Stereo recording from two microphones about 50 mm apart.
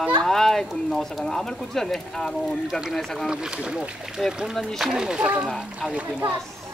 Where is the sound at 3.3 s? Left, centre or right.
Centre.